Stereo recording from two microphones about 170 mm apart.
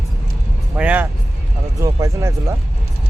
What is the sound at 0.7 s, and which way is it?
Music, 10° right (ahead or behind).